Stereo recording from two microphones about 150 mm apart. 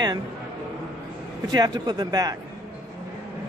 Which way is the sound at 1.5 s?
30° right (ahead or behind).